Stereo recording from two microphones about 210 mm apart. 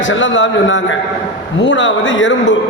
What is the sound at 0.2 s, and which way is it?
A man's voice, 60° left (ahead or behind).